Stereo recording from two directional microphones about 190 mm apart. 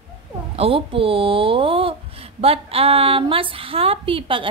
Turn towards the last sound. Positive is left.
turn(degrees=-25)  # may be behind; listen again after turning